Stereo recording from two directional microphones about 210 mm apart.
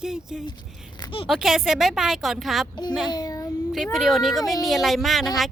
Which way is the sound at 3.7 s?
Centre (ahead or behind).